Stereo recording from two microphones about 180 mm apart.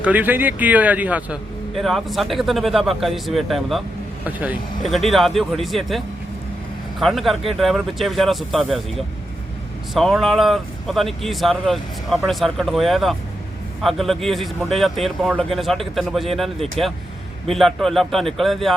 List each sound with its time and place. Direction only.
0.0 s a man's voice: 10° right (ahead or behind)
7.0 s speech: centre (ahead or behind)